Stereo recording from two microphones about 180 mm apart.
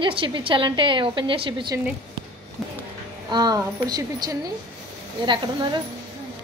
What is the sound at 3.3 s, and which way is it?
A woman's voice, 20° right (ahead or behind).